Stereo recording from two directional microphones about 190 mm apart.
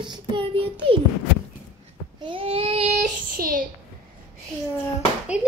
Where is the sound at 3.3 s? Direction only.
45° right (ahead or behind).